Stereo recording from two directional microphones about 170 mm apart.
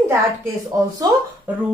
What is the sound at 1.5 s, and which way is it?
Speech, 10° right (ahead or behind).